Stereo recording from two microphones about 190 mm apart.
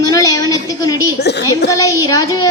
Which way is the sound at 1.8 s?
15° left (ahead or behind).